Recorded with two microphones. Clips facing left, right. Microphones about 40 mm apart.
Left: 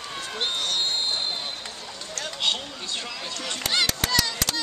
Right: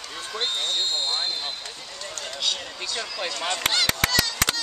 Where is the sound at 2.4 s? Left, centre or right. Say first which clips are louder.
Left 2 dB; left.